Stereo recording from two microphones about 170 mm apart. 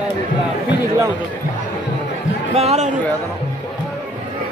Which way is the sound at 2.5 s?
40° right (ahead or behind).